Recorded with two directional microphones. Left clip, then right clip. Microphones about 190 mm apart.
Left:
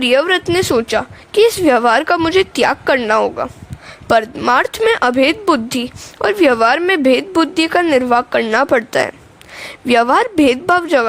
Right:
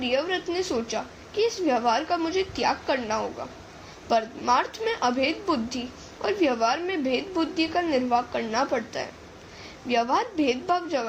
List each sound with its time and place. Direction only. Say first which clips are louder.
0.0 s a woman's voice: left 13 dB; 55° left (ahead or behind)